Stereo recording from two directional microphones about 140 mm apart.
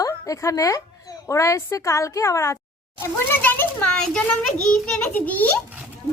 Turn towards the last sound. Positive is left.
turn(degrees=10)  # may be behind; listen again after turning